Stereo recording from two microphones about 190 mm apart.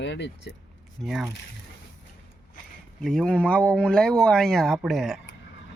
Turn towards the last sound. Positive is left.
turn(degrees=0)  # may be behind; listen again after turning